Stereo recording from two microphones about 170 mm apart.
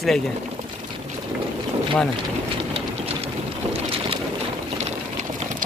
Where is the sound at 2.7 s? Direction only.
35° right (ahead or behind).